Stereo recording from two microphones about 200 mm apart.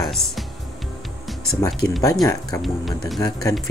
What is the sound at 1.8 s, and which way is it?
Speech, 15° left (ahead or behind).